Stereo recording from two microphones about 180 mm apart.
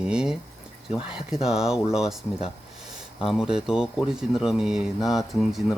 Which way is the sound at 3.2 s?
5° right (ahead or behind).